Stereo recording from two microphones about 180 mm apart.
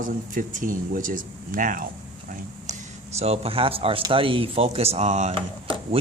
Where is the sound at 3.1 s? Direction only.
35° right (ahead or behind).